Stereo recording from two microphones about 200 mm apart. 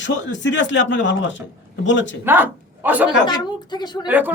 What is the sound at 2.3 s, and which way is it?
Speech, 10° right (ahead or behind).